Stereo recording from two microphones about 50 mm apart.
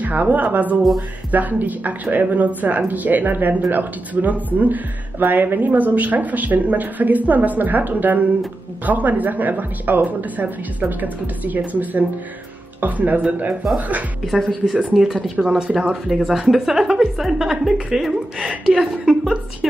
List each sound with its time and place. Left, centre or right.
0.0 s a woman's voice: right
14.7 s a woman's voice: right; by 18.2 s centre
18.4 s a woman's voice: right
18.8 s speech: centre